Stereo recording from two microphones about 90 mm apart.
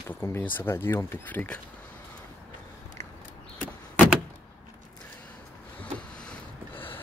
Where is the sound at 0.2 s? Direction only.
25° left (ahead or behind).